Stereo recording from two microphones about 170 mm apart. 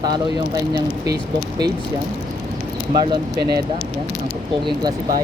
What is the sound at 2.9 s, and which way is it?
Speech, 25° right (ahead or behind).